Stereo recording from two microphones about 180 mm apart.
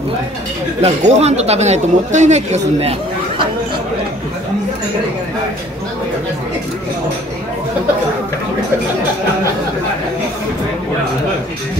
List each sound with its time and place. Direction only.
0.8 s speech: 35° right (ahead or behind)